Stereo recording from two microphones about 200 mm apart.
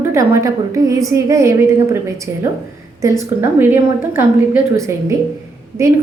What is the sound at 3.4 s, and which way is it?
A woman's voice, 10° right (ahead or behind).